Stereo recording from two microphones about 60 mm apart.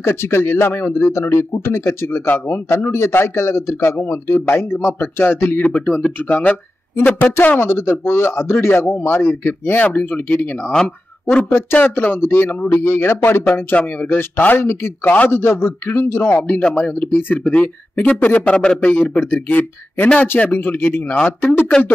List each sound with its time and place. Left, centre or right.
0.0 s a man's voice: left
5.6 s speech: left
7.3 s a man's voice: left
11.5 s a man's voice: left
13.7 s a man's voice: left